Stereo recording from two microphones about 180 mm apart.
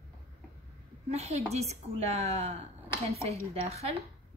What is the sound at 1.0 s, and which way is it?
A woman's voice, 35° right (ahead or behind).